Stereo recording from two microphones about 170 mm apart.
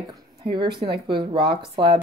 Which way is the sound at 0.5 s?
25° right (ahead or behind).